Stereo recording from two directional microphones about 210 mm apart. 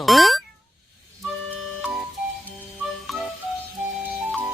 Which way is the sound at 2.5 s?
Centre (ahead or behind).